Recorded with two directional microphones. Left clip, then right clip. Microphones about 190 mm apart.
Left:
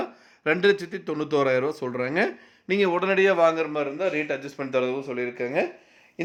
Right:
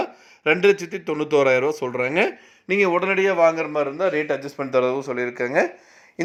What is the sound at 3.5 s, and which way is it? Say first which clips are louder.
Speech: right 3 dB; 10° right (ahead or behind).